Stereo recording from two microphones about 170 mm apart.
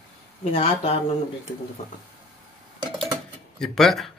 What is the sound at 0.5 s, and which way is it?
Speech, 35° left (ahead or behind).